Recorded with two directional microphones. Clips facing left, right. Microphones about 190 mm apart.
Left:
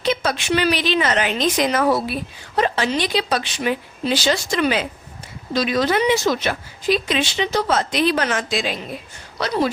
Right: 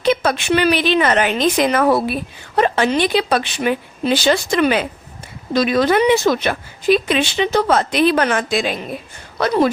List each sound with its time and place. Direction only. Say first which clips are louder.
0.0 s speech: right 5 dB; 55° right (ahead or behind)